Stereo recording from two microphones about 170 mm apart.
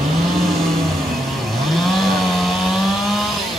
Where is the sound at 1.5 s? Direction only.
Centre (ahead or behind).